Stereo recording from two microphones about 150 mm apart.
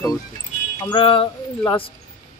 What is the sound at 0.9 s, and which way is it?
Speech, 35° left (ahead or behind).